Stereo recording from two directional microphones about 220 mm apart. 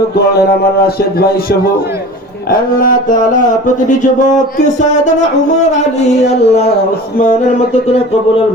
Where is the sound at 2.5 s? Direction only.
40° left (ahead or behind).